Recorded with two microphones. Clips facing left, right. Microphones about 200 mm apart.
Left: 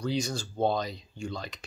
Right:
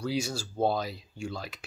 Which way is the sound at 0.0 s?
5° right (ahead or behind).